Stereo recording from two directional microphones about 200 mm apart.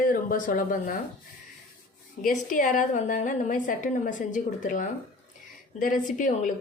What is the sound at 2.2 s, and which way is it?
A woman's voice, 40° left (ahead or behind).